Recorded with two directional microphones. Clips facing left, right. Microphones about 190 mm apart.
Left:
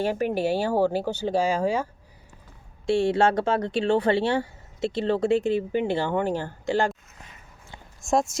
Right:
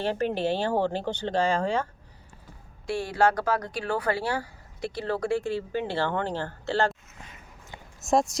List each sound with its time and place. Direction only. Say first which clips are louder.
0.0 s speech: left 2 dB; 10° left (ahead or behind)
2.8 s speech: left 4 dB; 25° left (ahead or behind)
8.0 s speech: even; centre (ahead or behind)